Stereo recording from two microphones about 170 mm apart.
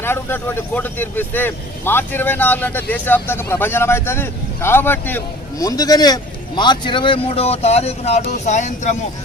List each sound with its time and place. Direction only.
0.0 s a man's voice: 15° left (ahead or behind); by 9.0 s 45° left (ahead or behind)